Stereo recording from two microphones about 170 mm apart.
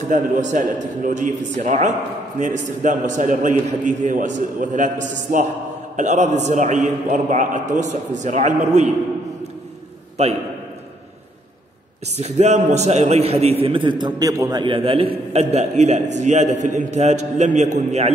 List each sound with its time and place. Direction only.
0.1 s a man's voice: 50° right (ahead or behind)
10.2 s a man's voice: 40° right (ahead or behind)
12.2 s a man's voice: 40° right (ahead or behind)